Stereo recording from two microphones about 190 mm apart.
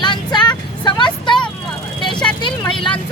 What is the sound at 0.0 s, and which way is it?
Vehicle, 25° left (ahead or behind).